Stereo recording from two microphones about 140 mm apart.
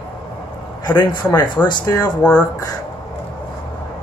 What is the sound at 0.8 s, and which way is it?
A man's voice, 30° left (ahead or behind).